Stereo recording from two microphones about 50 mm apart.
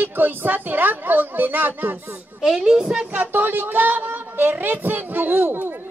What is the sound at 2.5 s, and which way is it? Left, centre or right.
Speech, centre.